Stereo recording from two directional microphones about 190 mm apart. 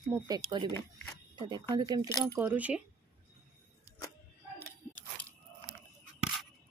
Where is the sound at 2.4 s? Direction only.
5° right (ahead or behind).